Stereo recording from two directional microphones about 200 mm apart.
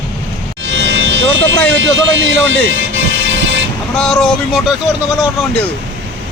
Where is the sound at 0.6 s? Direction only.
70° right (ahead or behind).